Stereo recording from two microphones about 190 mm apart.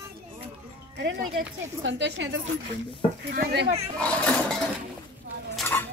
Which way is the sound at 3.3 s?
60° right (ahead or behind).